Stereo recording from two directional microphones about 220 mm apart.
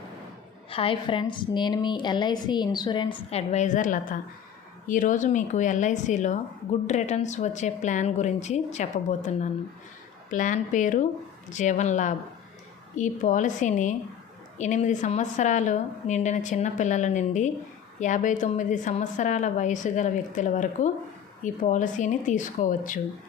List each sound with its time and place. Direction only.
0.7 s a woman's voice: 25° left (ahead or behind)